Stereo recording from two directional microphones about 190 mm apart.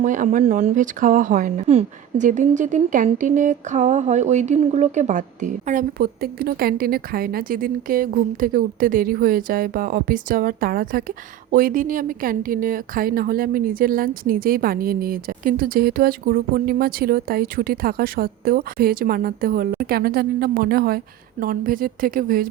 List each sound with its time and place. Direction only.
0.0 s speech: 40° right (ahead or behind)